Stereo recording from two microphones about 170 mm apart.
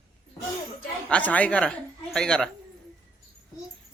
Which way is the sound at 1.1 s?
10° left (ahead or behind).